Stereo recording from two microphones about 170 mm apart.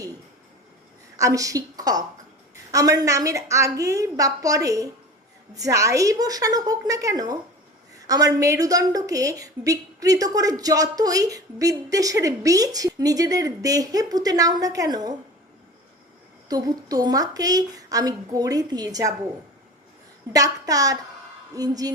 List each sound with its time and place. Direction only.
1.1 s a woman's voice: 20° right (ahead or behind)
16.5 s a woman's voice: 20° right (ahead or behind)
20.3 s a woman's voice: 20° right (ahead or behind)